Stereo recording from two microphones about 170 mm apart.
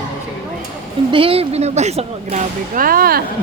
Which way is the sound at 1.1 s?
30° right (ahead or behind).